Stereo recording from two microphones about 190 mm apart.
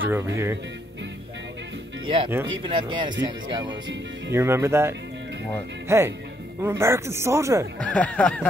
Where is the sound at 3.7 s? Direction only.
75° right (ahead or behind).